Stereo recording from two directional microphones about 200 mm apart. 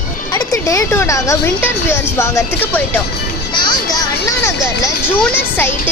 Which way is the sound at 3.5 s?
20° left (ahead or behind).